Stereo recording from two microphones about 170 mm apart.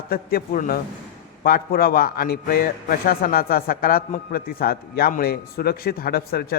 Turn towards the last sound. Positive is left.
turn(degrees=65)  # may be behind; listen again after turning